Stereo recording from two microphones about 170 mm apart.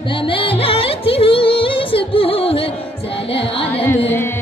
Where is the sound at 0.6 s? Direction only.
35° left (ahead or behind).